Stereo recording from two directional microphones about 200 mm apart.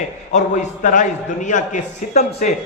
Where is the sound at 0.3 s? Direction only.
35° left (ahead or behind).